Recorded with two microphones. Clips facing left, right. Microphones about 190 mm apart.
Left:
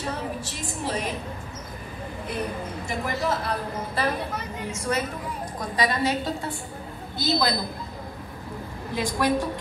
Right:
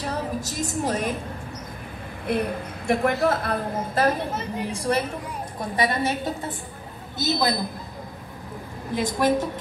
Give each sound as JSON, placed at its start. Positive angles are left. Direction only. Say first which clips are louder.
{"t": 0.1, "sound": "a woman's voice", "louder": "right 3 dB", "side_deg": -40}
{"t": 2.3, "sound": "a woman's voice", "louder": "right 6 dB", "side_deg": -60}
{"t": 4.3, "sound": "a woman's voice", "louder": "right 4 dB", "side_deg": -30}
{"t": 8.9, "sound": "a woman's voice", "louder": "right 2 dB", "side_deg": -20}